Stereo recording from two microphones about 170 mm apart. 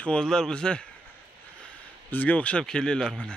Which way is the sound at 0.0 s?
5° left (ahead or behind).